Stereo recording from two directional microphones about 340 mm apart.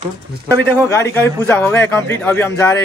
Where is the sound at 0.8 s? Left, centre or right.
Centre.